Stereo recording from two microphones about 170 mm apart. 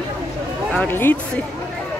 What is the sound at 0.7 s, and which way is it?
Speech, 10° left (ahead or behind).